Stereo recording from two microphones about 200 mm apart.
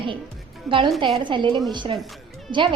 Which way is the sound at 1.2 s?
25° right (ahead or behind).